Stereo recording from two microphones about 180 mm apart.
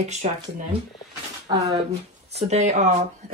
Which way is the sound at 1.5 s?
20° right (ahead or behind).